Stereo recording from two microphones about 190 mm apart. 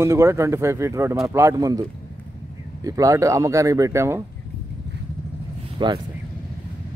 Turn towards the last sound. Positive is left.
turn(degrees=-25)  # may be behind; listen again after turning